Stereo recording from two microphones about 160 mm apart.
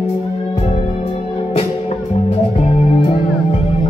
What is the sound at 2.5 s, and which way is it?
Music, 40° left (ahead or behind).